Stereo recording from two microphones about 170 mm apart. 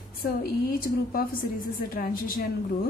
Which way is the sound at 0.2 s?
60° left (ahead or behind).